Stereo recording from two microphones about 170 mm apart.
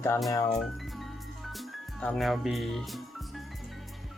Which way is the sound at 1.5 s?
Centre (ahead or behind).